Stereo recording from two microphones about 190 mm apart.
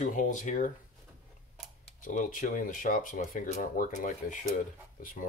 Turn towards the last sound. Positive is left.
turn(degrees=45)  # may be behind; listen again after turning